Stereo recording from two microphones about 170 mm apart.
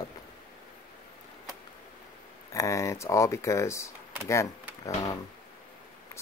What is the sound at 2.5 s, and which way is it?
Speech, 20° left (ahead or behind).